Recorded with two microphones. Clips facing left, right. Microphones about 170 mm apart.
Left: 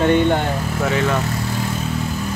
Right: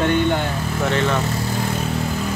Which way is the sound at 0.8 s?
5° left (ahead or behind).